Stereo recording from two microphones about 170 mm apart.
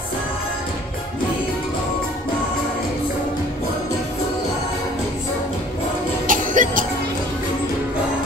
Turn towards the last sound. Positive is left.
turn(degrees=-50)  # may be behind; listen again after turning